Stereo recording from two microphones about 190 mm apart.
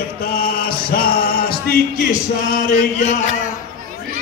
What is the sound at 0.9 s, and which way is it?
Music, 50° left (ahead or behind).